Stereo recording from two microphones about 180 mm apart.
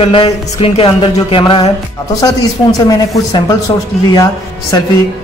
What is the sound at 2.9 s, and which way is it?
A man's voice, 20° left (ahead or behind).